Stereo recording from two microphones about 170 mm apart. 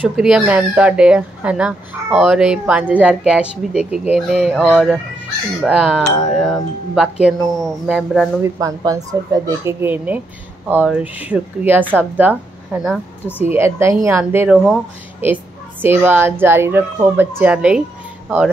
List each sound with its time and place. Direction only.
0.0 s speech: 5° right (ahead or behind)
8.4 s speech: 20° right (ahead or behind)
15.8 s speech: 10° right (ahead or behind)